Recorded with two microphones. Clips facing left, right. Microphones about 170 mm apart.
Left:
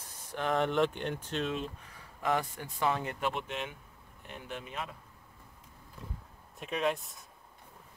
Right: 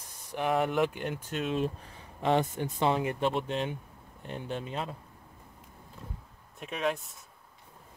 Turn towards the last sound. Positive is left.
turn(degrees=0)  # may be behind; listen again after turning